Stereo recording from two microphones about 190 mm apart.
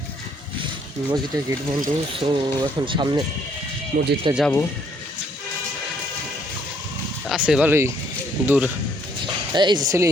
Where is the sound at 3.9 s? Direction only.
50° right (ahead or behind).